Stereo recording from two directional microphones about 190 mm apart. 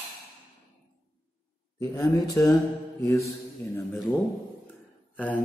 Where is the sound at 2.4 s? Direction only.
15° left (ahead or behind).